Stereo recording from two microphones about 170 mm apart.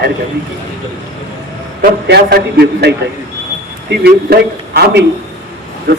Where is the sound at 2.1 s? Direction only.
75° right (ahead or behind).